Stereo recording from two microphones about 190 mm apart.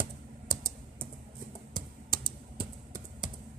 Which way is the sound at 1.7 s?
20° right (ahead or behind).